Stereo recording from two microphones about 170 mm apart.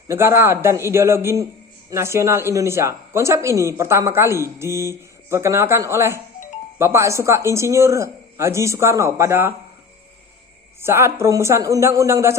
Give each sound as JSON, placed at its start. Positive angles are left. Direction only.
{"t": 0.1, "sound": "speech", "side_deg": -15}
{"t": 10.8, "sound": "speech", "side_deg": -15}